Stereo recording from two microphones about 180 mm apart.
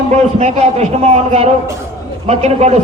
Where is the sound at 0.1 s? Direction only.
35° right (ahead or behind).